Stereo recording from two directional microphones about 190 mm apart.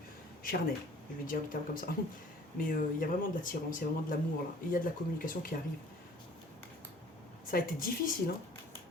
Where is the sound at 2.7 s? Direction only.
45° left (ahead or behind).